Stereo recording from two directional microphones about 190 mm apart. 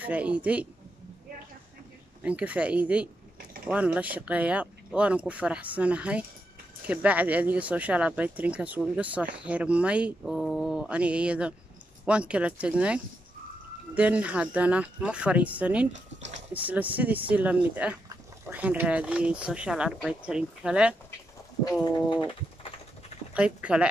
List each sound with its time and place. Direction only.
0.0 s speech: 5° right (ahead or behind)
2.2 s speech: 5° right (ahead or behind)
15.9 s speech: 40° right (ahead or behind)
16.5 s speech: 10° right (ahead or behind)
22.1 s typing: 25° left (ahead or behind)
23.3 s speech: 5° right (ahead or behind)